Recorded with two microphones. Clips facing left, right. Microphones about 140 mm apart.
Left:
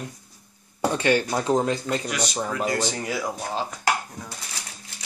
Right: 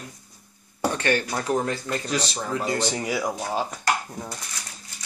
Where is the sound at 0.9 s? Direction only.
15° left (ahead or behind).